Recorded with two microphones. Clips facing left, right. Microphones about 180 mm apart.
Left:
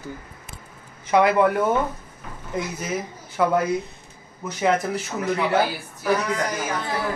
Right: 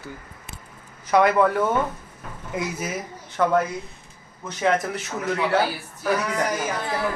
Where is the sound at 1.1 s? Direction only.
25° left (ahead or behind).